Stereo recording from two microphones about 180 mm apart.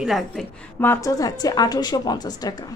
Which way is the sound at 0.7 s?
15° left (ahead or behind).